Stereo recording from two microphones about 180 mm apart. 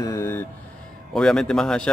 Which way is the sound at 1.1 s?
5° left (ahead or behind).